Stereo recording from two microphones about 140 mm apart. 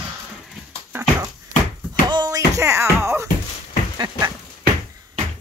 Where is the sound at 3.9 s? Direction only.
30° right (ahead or behind).